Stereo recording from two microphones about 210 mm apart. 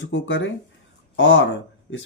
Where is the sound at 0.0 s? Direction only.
65° left (ahead or behind).